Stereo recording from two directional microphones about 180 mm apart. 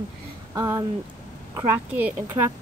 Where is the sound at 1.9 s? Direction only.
10° right (ahead or behind).